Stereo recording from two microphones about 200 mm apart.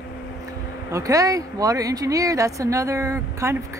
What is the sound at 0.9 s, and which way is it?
Speech, 15° right (ahead or behind).